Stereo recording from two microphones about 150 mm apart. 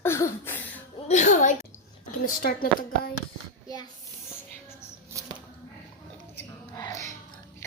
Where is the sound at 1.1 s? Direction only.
55° left (ahead or behind).